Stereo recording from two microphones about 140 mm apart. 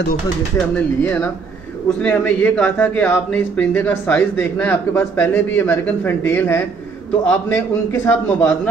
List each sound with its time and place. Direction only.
1.0 s a man's voice: 15° left (ahead or behind)